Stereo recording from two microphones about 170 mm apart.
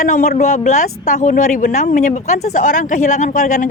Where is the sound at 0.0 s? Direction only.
50° left (ahead or behind).